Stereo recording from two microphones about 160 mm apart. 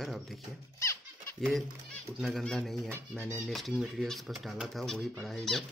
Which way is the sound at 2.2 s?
Centre (ahead or behind).